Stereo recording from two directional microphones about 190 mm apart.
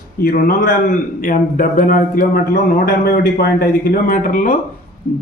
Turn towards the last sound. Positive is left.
turn(degrees=45)  # may be behind; listen again after turning